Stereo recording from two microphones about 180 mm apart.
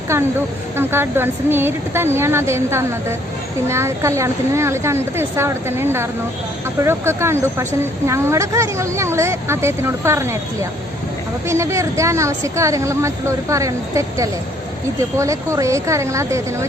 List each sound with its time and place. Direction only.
0.1 s speech: 15° right (ahead or behind)